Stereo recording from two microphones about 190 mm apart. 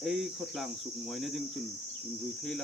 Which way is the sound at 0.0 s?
Centre (ahead or behind).